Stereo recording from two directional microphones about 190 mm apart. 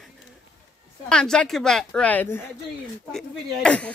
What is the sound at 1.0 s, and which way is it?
Speech, 5° left (ahead or behind).